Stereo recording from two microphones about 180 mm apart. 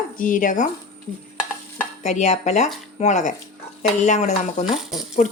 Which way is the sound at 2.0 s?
40° left (ahead or behind).